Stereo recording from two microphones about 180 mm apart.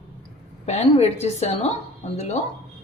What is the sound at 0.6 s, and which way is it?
Speech, 35° left (ahead or behind).